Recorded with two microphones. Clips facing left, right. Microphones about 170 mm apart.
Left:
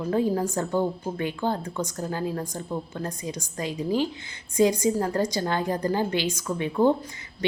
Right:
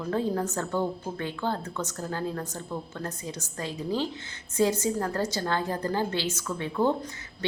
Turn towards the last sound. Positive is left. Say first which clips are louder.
# left 5 dB
turn(degrees=15)  # may be behind; listen again after turning